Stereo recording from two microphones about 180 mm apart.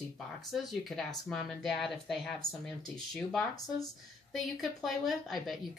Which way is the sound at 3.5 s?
20° left (ahead or behind).